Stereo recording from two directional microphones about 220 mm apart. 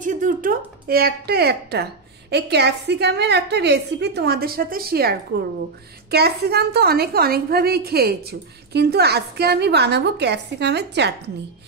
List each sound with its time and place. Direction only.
0.0 s a woman's voice: 35° right (ahead or behind)